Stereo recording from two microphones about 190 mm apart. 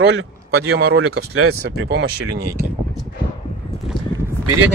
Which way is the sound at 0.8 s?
60° right (ahead or behind).